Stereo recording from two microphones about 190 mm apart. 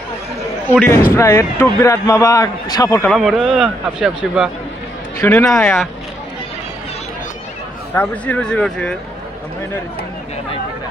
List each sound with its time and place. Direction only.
0.7 s a man's voice: 10° left (ahead or behind)
3.1 s speech: centre (ahead or behind)
7.9 s speech: 10° left (ahead or behind)